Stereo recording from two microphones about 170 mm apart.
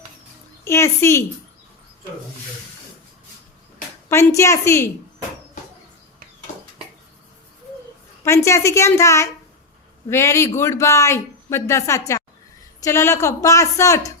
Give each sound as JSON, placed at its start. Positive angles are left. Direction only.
{"t": 0.6, "sound": "a woman's voice", "side_deg": 15}
{"t": 4.1, "sound": "speech", "side_deg": 15}
{"t": 8.2, "sound": "speech", "side_deg": 15}